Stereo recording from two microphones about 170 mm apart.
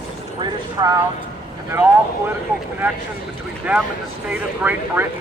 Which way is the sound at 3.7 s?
10° right (ahead or behind).